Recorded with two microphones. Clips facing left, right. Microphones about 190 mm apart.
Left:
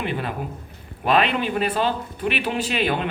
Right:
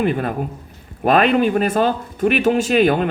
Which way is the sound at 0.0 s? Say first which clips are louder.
Right 7 dB; 45° right (ahead or behind).